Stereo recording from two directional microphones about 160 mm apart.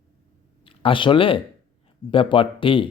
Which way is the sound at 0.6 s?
35° left (ahead or behind).